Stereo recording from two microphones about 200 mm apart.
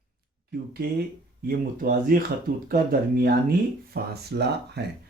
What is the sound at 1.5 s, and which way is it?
Speech, 45° right (ahead or behind).